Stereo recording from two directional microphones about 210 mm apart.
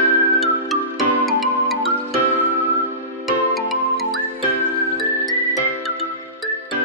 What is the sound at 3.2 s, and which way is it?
Music, centre (ahead or behind).